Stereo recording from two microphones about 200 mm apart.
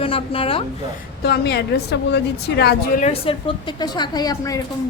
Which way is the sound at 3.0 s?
30° left (ahead or behind).